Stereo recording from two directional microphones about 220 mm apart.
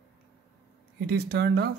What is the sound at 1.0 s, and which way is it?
Speech, 45° right (ahead or behind).